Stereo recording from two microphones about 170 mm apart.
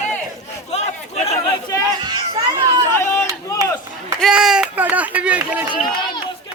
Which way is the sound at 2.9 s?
15° left (ahead or behind).